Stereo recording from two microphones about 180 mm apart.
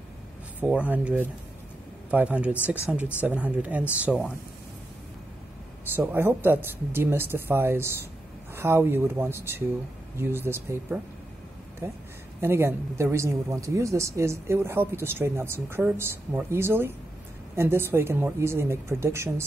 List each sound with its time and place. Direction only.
0.6 s speech: 5° right (ahead or behind)
5.9 s speech: 10° right (ahead or behind)